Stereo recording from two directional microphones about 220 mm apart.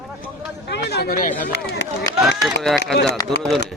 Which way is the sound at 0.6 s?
50° left (ahead or behind).